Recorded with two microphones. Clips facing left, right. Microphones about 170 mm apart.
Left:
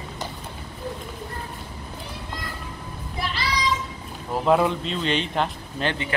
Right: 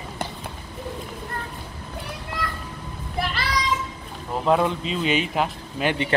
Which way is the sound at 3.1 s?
55° right (ahead or behind).